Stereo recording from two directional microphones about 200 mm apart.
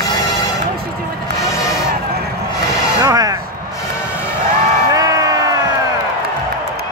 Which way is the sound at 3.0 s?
20° right (ahead or behind).